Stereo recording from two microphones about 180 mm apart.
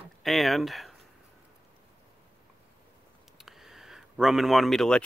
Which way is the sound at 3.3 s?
Centre (ahead or behind).